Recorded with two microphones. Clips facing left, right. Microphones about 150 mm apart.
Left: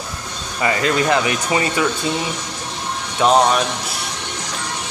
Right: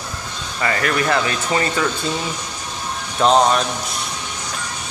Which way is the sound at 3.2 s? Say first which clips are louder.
Even; 5° left (ahead or behind).